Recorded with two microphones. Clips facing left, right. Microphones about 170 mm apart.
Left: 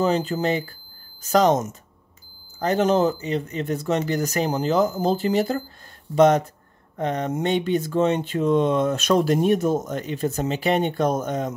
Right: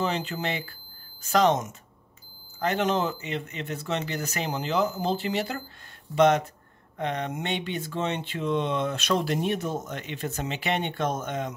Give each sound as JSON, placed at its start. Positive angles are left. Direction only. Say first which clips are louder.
{"t": 0.0, "sound": "speech", "louder": "left 7 dB", "side_deg": 40}